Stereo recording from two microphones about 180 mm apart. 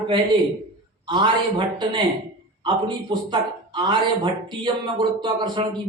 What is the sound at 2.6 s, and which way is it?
Speech, 25° right (ahead or behind).